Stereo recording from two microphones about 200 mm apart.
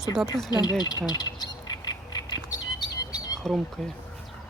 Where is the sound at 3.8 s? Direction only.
5° left (ahead or behind).